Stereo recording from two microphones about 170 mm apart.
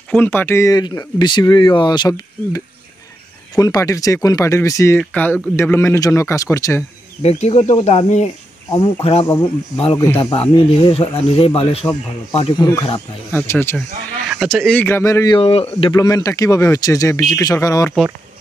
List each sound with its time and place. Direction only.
0.1 s speech: 10° left (ahead or behind)
7.2 s speech: 40° left (ahead or behind)
9.9 s speech: 15° left (ahead or behind)
10.3 s speech: 35° left (ahead or behind)
13.3 s speech: 15° left (ahead or behind)
14.3 s speech: centre (ahead or behind); by 15.3 s 15° left (ahead or behind)
15.3 s speech: 35° left (ahead or behind)
15.9 s speech: 20° left (ahead or behind)